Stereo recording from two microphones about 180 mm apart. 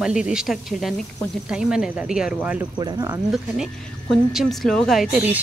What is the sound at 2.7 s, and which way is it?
Speech, 20° right (ahead or behind).